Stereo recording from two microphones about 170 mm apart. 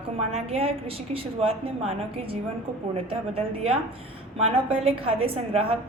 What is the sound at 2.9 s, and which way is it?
A woman's voice, 35° right (ahead or behind).